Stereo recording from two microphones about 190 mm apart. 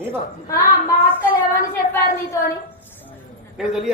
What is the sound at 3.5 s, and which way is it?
Speech, centre (ahead or behind).